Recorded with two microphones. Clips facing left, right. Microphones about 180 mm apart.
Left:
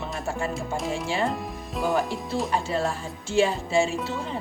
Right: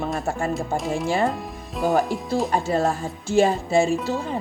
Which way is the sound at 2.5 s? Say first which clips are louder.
Right 4 dB; 45° right (ahead or behind).